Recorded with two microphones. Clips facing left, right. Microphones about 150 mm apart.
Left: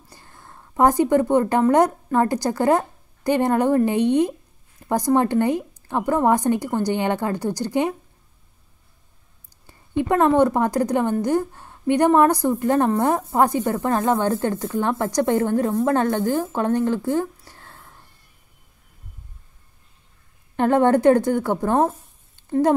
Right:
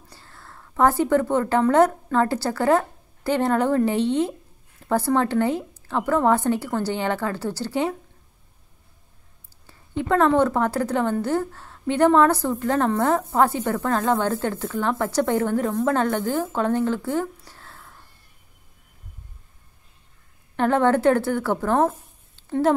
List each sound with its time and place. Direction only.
0.1 s a woman's voice: 15° left (ahead or behind)
9.7 s a woman's voice: 15° left (ahead or behind)
17.5 s whispering: 15° left (ahead or behind)
20.5 s a woman's voice: 15° left (ahead or behind)